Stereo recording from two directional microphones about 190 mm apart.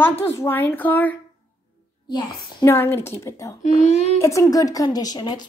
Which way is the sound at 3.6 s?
35° left (ahead or behind).